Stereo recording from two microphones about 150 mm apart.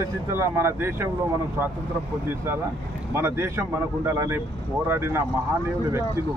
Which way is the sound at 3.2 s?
20° right (ahead or behind).